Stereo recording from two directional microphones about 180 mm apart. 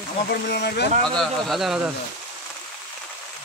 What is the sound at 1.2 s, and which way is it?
Speech, centre (ahead or behind).